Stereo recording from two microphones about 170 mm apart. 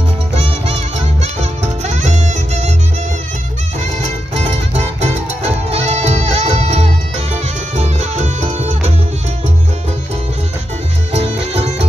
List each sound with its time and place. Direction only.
0.7 s music: 40° right (ahead or behind)
4.0 s music: 40° right (ahead or behind)
11.1 s music: 35° right (ahead or behind)